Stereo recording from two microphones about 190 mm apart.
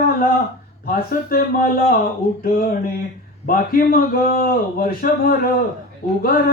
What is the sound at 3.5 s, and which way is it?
Speech, 50° left (ahead or behind).